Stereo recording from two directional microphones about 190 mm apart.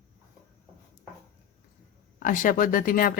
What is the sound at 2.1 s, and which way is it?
Speech, 45° left (ahead or behind).